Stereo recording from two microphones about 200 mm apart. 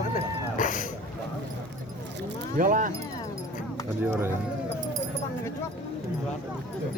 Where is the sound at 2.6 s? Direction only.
40° right (ahead or behind).